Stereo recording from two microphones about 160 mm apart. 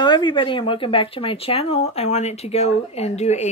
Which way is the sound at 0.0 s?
30° left (ahead or behind).